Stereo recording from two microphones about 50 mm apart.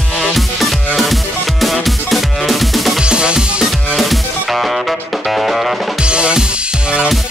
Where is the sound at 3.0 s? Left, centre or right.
Centre.